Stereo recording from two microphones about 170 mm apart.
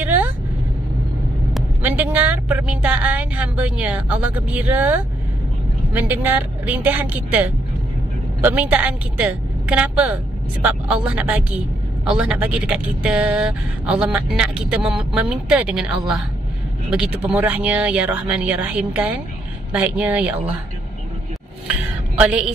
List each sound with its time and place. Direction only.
0.0 s vehicle: 10° right (ahead or behind)
1.8 s a woman's voice: 10° right (ahead or behind)
22.2 s a woman's voice: 5° right (ahead or behind)